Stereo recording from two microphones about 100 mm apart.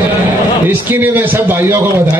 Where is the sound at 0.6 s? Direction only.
20° right (ahead or behind).